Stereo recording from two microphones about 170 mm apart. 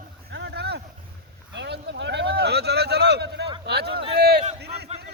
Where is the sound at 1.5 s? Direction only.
85° right.